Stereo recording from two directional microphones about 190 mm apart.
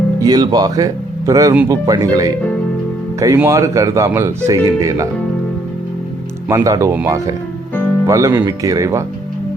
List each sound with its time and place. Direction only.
0.2 s speech: 20° right (ahead or behind)
6.5 s speech: 15° right (ahead or behind)